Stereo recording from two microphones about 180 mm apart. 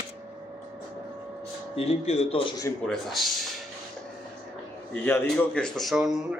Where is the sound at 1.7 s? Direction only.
35° left (ahead or behind).